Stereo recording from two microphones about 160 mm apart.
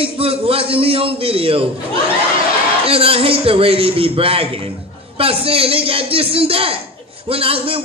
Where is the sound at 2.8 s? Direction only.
35° right (ahead or behind).